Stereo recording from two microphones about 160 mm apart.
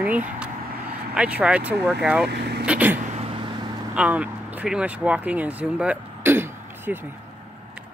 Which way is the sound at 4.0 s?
10° right (ahead or behind).